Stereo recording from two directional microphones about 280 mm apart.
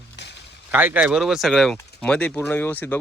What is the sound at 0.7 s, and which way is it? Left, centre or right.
Speech, centre.